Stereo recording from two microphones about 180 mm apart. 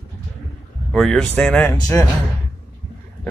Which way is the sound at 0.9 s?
Centre (ahead or behind).